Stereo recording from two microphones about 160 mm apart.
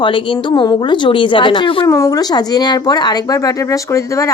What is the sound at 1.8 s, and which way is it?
A woman's voice, 20° left (ahead or behind).